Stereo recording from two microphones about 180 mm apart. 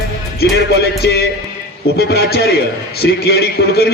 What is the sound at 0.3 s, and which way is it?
A man's voice, 65° left (ahead or behind).